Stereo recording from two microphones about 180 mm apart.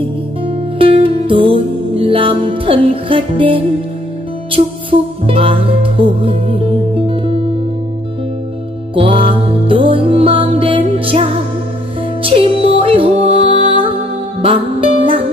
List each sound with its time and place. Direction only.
0.7 s music: 30° right (ahead or behind)
5.2 s music: 30° right (ahead or behind)
8.9 s music: 30° right (ahead or behind)